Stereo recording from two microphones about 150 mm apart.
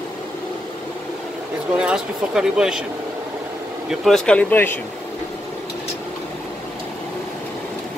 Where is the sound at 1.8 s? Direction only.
5° right (ahead or behind).